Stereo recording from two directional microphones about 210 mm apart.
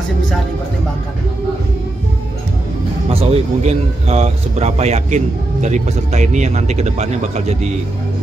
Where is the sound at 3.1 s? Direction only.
30° right (ahead or behind).